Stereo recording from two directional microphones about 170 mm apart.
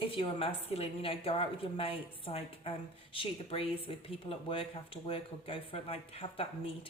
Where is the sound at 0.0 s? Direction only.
30° left (ahead or behind).